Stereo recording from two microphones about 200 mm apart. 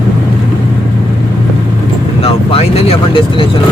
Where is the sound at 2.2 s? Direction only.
30° left (ahead or behind).